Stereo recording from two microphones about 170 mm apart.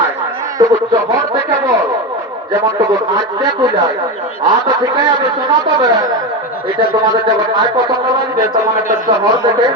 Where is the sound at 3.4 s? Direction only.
25° right (ahead or behind).